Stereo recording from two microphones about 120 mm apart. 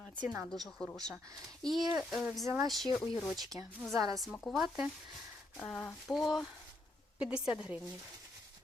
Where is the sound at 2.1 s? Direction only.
Centre (ahead or behind).